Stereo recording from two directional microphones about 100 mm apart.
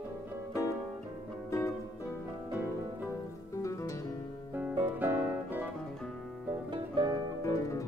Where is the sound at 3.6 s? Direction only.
30° left (ahead or behind).